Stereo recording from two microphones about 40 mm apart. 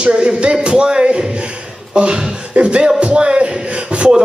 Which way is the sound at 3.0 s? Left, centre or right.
Right.